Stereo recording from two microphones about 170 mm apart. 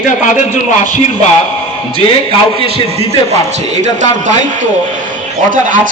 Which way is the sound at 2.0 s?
30° left (ahead or behind).